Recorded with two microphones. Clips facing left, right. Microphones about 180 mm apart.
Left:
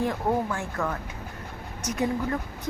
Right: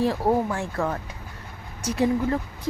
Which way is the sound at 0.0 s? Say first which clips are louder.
Right 4 dB; 30° right (ahead or behind).